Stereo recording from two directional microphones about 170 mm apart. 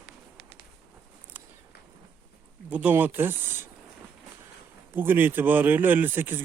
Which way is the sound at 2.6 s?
10° right (ahead or behind).